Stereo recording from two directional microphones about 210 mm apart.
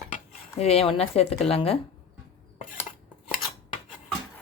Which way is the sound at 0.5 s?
30° left (ahead or behind).